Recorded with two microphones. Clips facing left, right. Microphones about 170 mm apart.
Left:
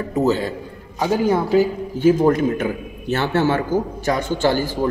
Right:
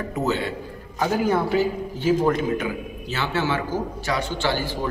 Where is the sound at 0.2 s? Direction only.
35° left (ahead or behind).